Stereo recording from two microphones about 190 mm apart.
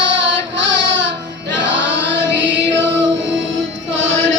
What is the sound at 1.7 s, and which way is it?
Choir, 70° right (ahead or behind).